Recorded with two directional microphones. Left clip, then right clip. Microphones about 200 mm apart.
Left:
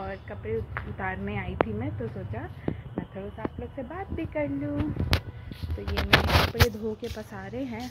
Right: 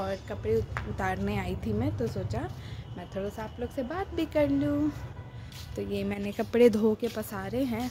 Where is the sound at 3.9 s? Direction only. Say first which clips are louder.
Right 3 dB; 25° right (ahead or behind).